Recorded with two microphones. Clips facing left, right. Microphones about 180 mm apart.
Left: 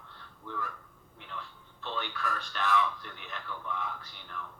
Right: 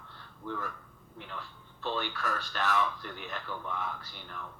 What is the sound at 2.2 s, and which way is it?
A man's voice, 40° right (ahead or behind).